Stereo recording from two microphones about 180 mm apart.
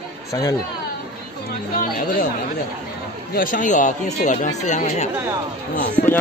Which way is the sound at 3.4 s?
45° left (ahead or behind).